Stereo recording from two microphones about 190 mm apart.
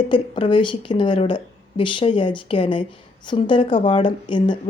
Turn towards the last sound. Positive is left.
turn(degrees=25)  # may be behind; listen again after turning